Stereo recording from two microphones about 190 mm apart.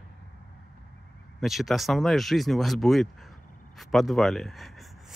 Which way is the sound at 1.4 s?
Centre (ahead or behind).